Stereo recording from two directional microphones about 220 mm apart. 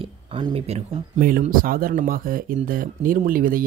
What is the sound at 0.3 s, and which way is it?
Speech, 25° right (ahead or behind).